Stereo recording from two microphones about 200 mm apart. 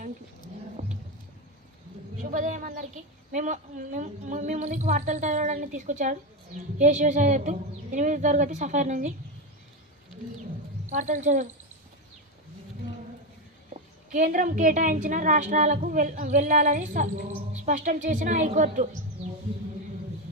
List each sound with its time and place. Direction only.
2.3 s a woman's voice: 40° right (ahead or behind)
10.8 s a woman's voice: 35° right (ahead or behind)
14.1 s a woman's voice: 40° right (ahead or behind)